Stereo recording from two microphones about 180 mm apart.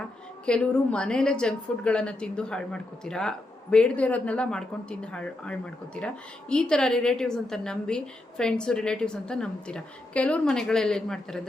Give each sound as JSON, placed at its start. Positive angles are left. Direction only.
{"t": 0.4, "sound": "a woman's voice", "side_deg": 5}